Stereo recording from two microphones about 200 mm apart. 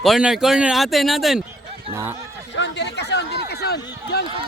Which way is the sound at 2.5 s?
65° left (ahead or behind).